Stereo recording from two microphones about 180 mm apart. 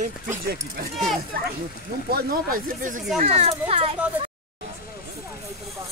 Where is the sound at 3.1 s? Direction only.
35° right (ahead or behind).